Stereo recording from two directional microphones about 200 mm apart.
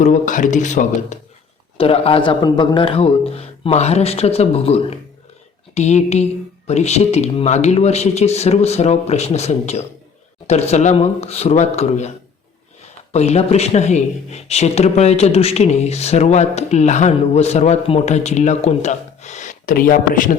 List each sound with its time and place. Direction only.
0.0 s a man's voice: 40° left (ahead or behind)
13.1 s speech: 30° left (ahead or behind)